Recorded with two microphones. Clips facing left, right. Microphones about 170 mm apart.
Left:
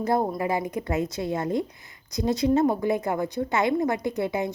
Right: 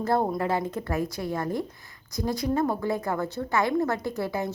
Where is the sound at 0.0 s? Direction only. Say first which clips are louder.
Left 1 dB; 10° left (ahead or behind).